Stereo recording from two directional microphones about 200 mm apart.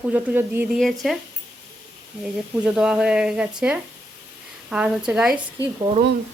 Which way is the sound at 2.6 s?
5° right (ahead or behind).